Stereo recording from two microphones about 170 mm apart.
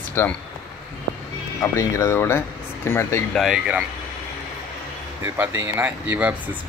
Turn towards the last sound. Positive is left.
turn(degrees=-10)  # may be behind; listen again after turning